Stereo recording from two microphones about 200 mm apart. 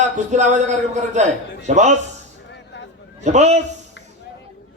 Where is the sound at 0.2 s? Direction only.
35° right (ahead or behind).